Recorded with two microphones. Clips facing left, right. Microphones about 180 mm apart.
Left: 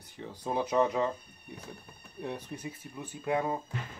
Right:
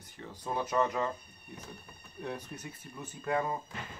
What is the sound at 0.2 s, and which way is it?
Speech, 10° left (ahead or behind).